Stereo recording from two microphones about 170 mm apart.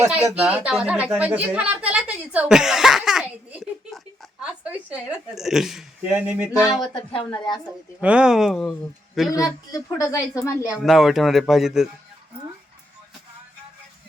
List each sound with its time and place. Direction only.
0.3 s a woman's voice: 5° right (ahead or behind)
6.8 s a woman's voice: 30° left (ahead or behind)
8.0 s speech: 5° right (ahead or behind)
9.3 s a woman's voice: 20° left (ahead or behind)
10.7 s speech: centre (ahead or behind)